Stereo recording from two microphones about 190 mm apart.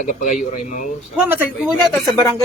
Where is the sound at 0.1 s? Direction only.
40° left (ahead or behind).